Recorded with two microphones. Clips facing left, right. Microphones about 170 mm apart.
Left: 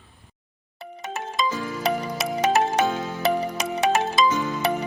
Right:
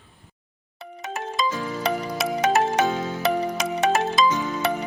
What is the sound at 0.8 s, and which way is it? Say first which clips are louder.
Music: right 1 dB; centre (ahead or behind).